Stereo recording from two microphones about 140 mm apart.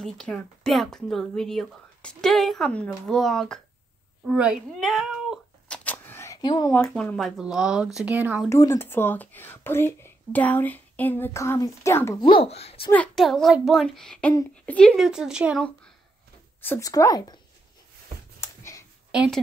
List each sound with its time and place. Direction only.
0.0 s speech: 5° left (ahead or behind)
4.3 s cat: 5° right (ahead or behind)
5.9 s a sound: 15° left (ahead or behind)
6.7 s speech: 5° left (ahead or behind); by 8.5 s 10° right (ahead or behind)
8.5 s speech: 20° left (ahead or behind)
12.2 s speech: 35° left (ahead or behind)
12.9 s speech: 5° left (ahead or behind)
16.6 s speech: 20° left (ahead or behind)
18.4 s a sound: 20° left (ahead or behind)
19.1 s a woman's voice: 5° right (ahead or behind)